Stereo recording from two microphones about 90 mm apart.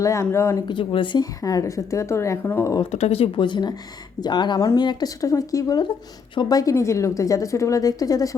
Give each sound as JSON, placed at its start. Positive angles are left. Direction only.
{"t": 0.0, "sound": "a woman's voice", "side_deg": 35}
{"t": 0.5, "sound": "speech", "side_deg": 65}
{"t": 1.2, "sound": "a woman's voice", "side_deg": 40}
{"t": 3.1, "sound": "a woman's voice", "side_deg": 80}